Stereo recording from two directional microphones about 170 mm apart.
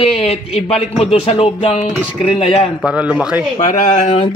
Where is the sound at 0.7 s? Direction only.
40° left (ahead or behind).